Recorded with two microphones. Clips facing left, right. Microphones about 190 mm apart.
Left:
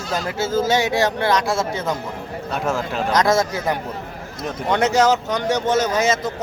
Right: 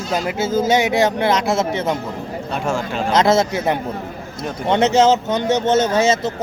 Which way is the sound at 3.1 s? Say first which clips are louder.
Right 3 dB; 20° right (ahead or behind).